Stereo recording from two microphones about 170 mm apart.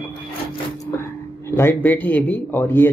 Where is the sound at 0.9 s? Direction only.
15° left (ahead or behind).